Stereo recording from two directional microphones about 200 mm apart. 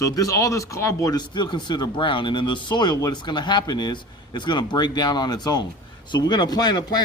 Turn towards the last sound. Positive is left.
turn(degrees=20)  # may be behind; listen again after turning